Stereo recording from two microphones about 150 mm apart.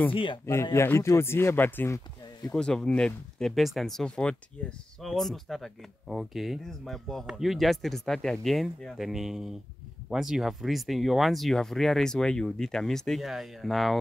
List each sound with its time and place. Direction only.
0.1 s speech: 35° left (ahead or behind)
0.7 s speech: 15° left (ahead or behind)
2.5 s speech: 5° left (ahead or behind)